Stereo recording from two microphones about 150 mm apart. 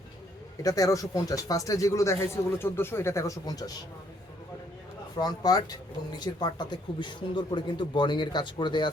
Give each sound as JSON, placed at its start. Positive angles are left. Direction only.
{"t": 0.6, "sound": "speech", "side_deg": 25}
{"t": 5.1, "sound": "speech", "side_deg": 25}